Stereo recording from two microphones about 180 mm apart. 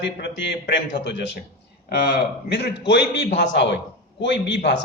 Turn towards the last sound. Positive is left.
turn(degrees=80)